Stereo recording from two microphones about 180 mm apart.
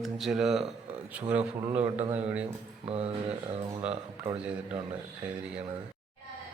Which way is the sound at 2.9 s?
35° right (ahead or behind).